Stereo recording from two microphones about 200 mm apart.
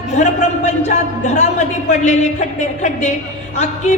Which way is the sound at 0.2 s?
35° left (ahead or behind).